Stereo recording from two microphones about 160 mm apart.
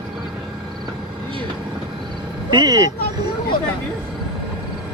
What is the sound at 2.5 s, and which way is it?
Speech, 25° right (ahead or behind).